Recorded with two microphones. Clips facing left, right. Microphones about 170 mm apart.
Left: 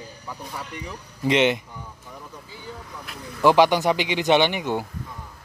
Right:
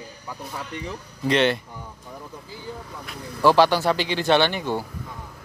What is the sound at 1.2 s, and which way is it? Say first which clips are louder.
Speech: left 1 dB; 15° left (ahead or behind).